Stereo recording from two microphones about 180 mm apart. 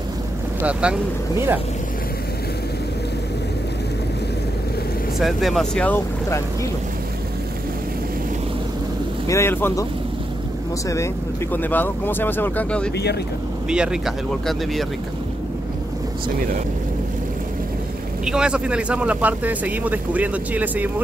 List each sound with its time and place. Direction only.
0.6 s speech: 5° right (ahead or behind)
5.2 s speech: centre (ahead or behind)
9.3 s speech: 15° left (ahead or behind)
11.5 s speech: 10° left (ahead or behind)
12.9 s speech: 65° left (ahead or behind)
13.7 s speech: 5° right (ahead or behind)
18.2 s speech: 5° right (ahead or behind)